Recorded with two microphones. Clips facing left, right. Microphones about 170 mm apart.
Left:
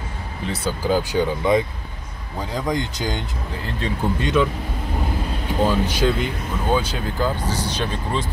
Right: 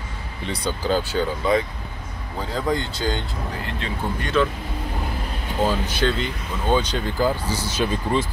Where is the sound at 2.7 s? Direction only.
20° left (ahead or behind).